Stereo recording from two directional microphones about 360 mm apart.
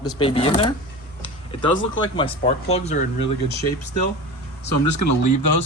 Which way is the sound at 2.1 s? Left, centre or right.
Centre.